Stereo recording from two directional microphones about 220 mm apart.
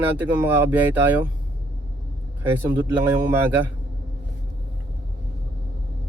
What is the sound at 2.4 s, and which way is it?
Speech, 10° right (ahead or behind).